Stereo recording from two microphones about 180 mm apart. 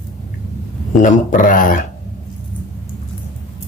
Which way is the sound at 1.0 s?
50° left (ahead or behind).